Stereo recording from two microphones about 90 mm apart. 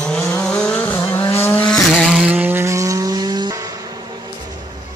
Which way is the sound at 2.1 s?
15° right (ahead or behind).